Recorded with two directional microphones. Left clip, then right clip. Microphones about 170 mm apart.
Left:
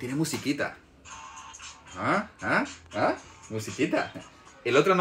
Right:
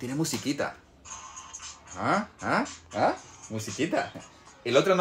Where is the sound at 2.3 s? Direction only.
35° right (ahead or behind).